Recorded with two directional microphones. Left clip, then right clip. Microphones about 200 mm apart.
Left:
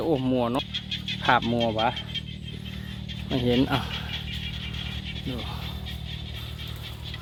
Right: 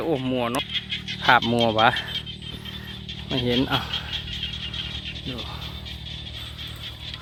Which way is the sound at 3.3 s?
Centre (ahead or behind).